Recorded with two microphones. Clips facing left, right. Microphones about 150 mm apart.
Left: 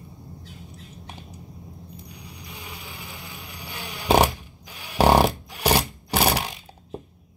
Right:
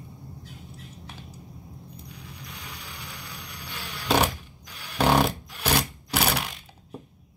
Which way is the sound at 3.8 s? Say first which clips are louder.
Left 4 dB; 15° left (ahead or behind).